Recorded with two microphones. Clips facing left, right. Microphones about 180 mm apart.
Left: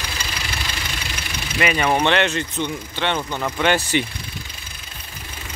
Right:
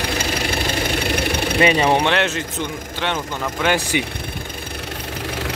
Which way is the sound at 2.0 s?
5° right (ahead or behind).